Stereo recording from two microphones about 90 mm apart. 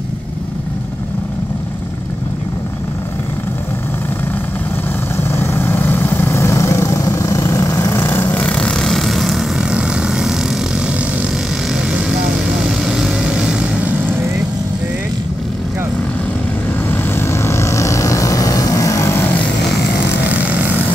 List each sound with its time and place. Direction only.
5.1 s vehicle: 25° left (ahead or behind); by 10.6 s 5° right (ahead or behind)
11.7 s vehicle: 5° right (ahead or behind)
16.9 s vehicle: 25° left (ahead or behind)